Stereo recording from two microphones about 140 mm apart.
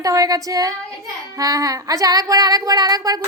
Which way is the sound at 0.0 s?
25° right (ahead or behind).